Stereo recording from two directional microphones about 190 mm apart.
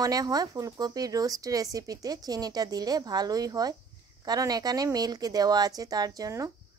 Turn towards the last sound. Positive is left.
turn(degrees=-15)  # may be behind; listen again after turning